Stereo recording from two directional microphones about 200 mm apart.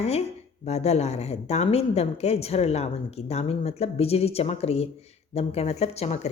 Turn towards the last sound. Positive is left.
turn(degrees=35)  # may be behind; listen again after turning